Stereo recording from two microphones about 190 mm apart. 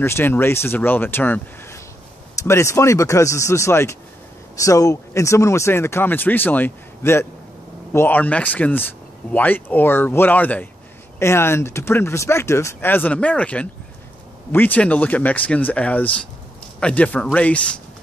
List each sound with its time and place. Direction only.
0.0 s speech: 10° left (ahead or behind)